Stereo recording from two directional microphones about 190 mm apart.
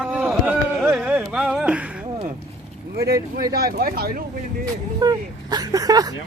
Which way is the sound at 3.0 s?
15° right (ahead or behind).